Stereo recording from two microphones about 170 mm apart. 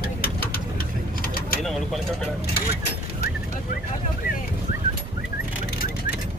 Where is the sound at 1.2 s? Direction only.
60° left (ahead or behind).